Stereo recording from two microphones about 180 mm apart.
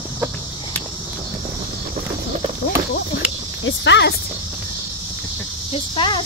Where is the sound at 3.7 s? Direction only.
75° left (ahead or behind).